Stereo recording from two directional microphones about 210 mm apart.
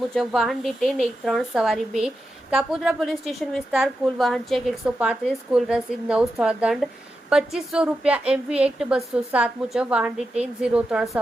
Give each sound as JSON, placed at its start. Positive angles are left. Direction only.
{"t": 0.1, "sound": "a woman's voice", "side_deg": 0}